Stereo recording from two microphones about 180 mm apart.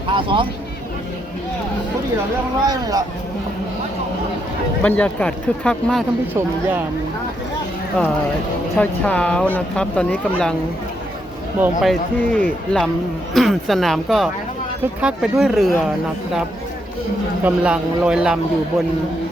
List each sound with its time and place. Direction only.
0.1 s speech: 30° right (ahead or behind)
2.6 s speech: 20° right (ahead or behind)
4.8 s speech: 10° left (ahead or behind)
8.0 s speech: 5° left (ahead or behind)
11.6 s speech: centre (ahead or behind)
17.4 s speech: 5° right (ahead or behind)